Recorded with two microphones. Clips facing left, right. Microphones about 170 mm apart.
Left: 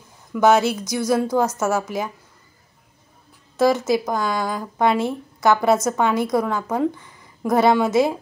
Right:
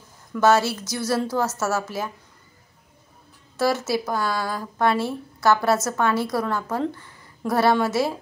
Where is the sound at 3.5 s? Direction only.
15° left (ahead or behind).